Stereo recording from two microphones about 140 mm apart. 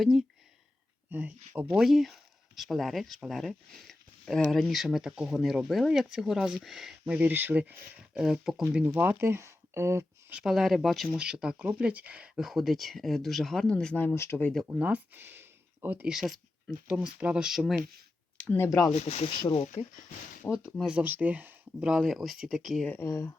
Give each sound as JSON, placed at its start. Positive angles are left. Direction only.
{"t": 0.0, "sound": "speech", "side_deg": 0}
{"t": 7.0, "sound": "speech", "side_deg": -10}
{"t": 9.0, "sound": "speech", "side_deg": -15}
{"t": 14.7, "sound": "speech", "side_deg": -10}
{"t": 18.5, "sound": "speech", "side_deg": 20}
{"t": 18.9, "sound": "speech", "side_deg": 50}
{"t": 20.7, "sound": "speech", "side_deg": -5}
{"t": 22.9, "sound": "speech", "side_deg": 15}